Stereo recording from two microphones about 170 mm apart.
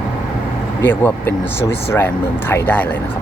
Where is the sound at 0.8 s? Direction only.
10° left (ahead or behind).